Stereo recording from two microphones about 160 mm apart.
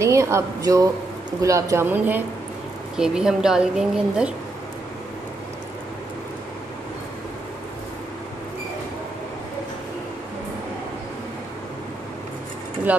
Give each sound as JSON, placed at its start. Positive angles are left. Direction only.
{"t": 0.0, "sound": "a woman's voice", "side_deg": -20}